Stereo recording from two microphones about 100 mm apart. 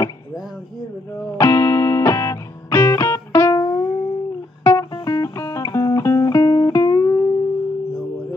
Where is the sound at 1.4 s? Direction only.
30° left (ahead or behind).